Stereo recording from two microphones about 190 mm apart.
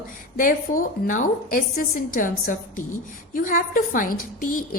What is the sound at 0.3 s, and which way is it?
A woman's voice, 45° left (ahead or behind).